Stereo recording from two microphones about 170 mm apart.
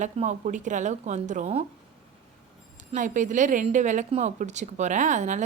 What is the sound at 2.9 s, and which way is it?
A woman's voice, 50° right (ahead or behind).